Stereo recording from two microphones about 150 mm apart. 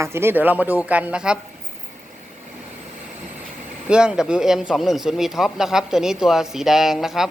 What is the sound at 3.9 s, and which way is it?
Speech, 5° right (ahead or behind).